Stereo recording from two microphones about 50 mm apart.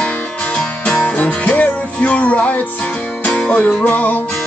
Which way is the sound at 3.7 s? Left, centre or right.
Left.